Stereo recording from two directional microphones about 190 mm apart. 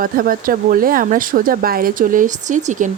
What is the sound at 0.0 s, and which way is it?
Speech, 50° right (ahead or behind).